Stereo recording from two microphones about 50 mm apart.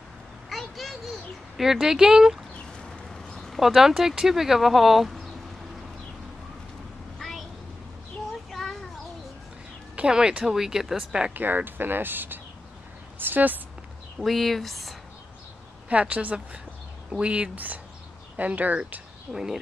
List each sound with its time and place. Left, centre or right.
0.5 s vehicle: centre
1.6 s speech: centre
3.1 s a sound: centre
3.6 s speech: centre
7.2 s a sound: centre
8.5 s a sound: centre
9.9 s speech: centre
11.3 s speech: right
14.2 s speech: centre
15.9 s a woman's voice: right
19.3 s speech: centre